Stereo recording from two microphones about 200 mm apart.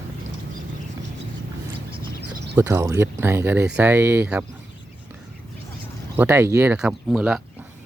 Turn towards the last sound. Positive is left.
turn(degrees=-5)  # may be behind; listen again after turning